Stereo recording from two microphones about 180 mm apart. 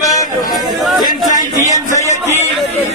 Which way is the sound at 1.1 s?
45° left (ahead or behind).